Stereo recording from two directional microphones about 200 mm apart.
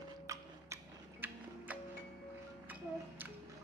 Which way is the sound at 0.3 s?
15° right (ahead or behind).